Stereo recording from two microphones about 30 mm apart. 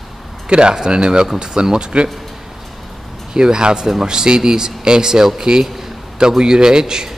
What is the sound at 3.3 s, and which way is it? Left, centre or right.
Speech, right.